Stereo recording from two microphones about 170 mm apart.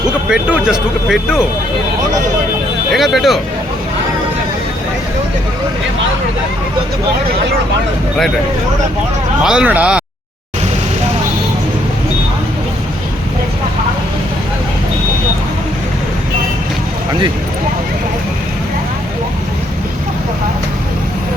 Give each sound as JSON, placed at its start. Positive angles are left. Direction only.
{"t": 0.3, "sound": "speech", "side_deg": -5}
{"t": 2.9, "sound": "speech", "side_deg": 0}
{"t": 9.4, "sound": "speech", "side_deg": -5}